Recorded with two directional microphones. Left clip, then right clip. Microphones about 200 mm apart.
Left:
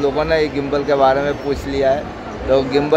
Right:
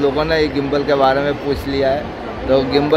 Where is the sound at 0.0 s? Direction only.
5° left (ahead or behind).